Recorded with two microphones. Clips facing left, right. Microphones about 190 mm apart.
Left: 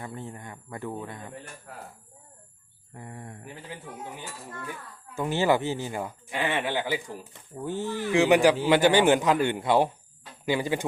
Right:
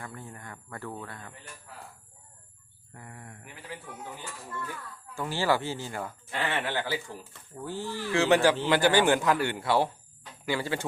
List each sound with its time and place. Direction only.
0.0 s speech: 20° left (ahead or behind)
1.7 s speech: 55° left (ahead or behind)
2.9 s speech: 25° left (ahead or behind)
4.6 s speech: 15° left (ahead or behind)